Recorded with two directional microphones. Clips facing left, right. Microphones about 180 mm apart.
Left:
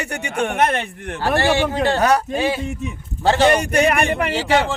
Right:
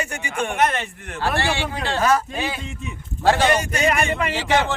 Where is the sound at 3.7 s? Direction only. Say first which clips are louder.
Left 4 dB; 60° left (ahead or behind).